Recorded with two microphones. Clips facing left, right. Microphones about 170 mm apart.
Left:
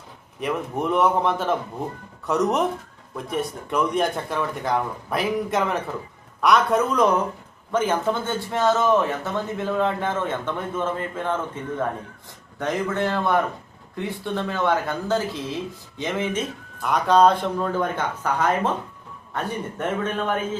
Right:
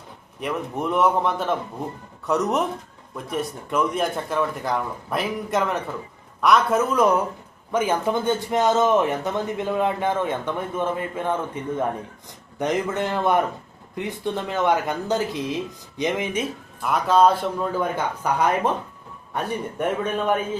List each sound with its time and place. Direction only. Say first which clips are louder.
0.3 s a man's voice: left 1 dB; centre (ahead or behind)
19.8 s speech: right 2 dB; 10° right (ahead or behind)